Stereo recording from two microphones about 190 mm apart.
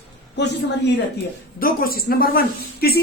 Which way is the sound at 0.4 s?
65° left (ahead or behind).